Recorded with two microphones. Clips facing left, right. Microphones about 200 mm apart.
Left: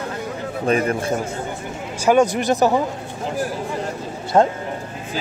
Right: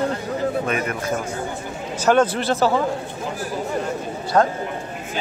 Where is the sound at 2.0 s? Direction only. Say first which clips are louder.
Left 2 dB; 10° left (ahead or behind).